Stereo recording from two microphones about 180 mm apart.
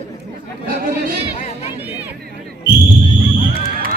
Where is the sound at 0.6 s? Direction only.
55° right (ahead or behind).